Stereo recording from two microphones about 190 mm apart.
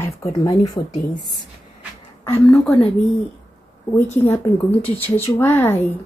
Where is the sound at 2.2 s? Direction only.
10° left (ahead or behind).